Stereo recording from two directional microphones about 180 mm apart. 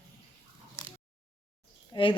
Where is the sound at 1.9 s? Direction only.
30° left (ahead or behind).